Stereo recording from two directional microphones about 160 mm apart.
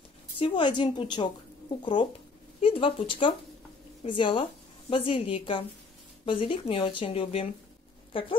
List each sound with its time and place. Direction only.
0.4 s a woman's voice: 30° left (ahead or behind)